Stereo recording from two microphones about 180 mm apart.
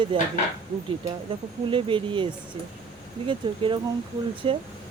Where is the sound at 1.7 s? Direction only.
30° right (ahead or behind).